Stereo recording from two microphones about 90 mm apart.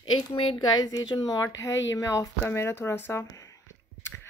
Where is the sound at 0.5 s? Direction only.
45° left (ahead or behind).